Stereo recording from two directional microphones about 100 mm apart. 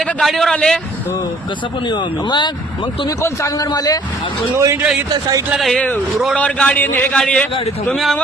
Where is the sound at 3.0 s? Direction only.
35° left (ahead or behind).